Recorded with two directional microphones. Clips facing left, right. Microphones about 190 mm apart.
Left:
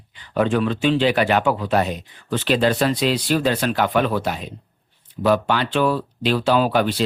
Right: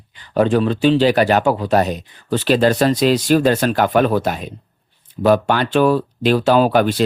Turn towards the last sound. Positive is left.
turn(degrees=-50)  # may be behind; listen again after turning